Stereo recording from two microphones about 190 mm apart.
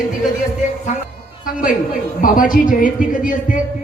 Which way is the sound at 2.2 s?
45° left (ahead or behind).